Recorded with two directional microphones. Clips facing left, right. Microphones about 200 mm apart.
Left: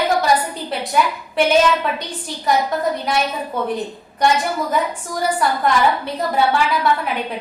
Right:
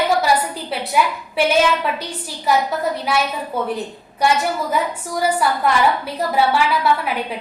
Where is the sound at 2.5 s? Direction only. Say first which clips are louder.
Even; 5° right (ahead or behind).